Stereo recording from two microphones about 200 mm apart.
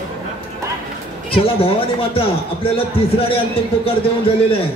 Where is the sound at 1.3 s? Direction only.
25° left (ahead or behind).